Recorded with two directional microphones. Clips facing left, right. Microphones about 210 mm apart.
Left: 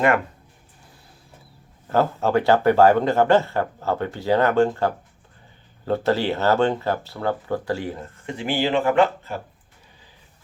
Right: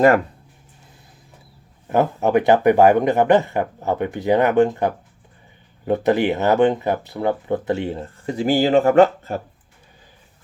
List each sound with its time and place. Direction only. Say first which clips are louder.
1.9 s speech: right 3 dB; 20° right (ahead or behind); by 9.4 s 45° right (ahead or behind)